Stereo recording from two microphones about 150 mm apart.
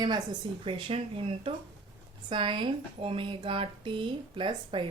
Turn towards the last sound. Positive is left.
turn(degrees=-30)  # may be behind; listen again after turning